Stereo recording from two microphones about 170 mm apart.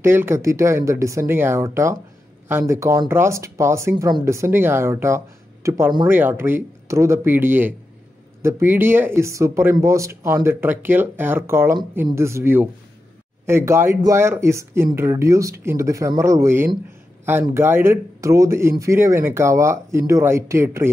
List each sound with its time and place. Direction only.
0.0 s speech: 15° right (ahead or behind)